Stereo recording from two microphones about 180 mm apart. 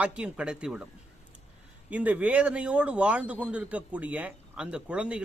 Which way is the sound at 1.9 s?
10° right (ahead or behind).